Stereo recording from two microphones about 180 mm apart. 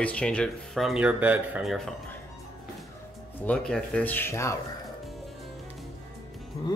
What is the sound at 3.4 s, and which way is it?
Speech, 5° left (ahead or behind).